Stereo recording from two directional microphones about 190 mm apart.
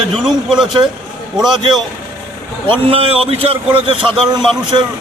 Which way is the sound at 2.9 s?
30° right (ahead or behind).